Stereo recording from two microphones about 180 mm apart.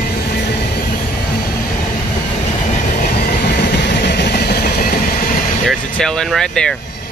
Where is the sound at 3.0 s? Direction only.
50° left (ahead or behind).